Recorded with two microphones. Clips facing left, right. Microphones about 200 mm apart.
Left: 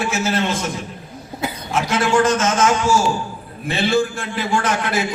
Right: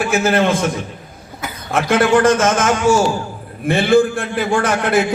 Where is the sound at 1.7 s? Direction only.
55° right (ahead or behind).